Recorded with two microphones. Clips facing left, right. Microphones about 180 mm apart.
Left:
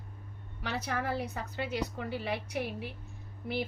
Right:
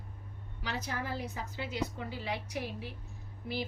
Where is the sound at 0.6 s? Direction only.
65° left (ahead or behind).